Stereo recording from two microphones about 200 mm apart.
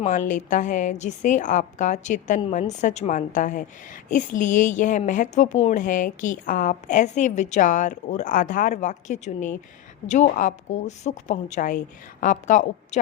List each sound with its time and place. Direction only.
0.0 s a woman's voice: 40° left (ahead or behind)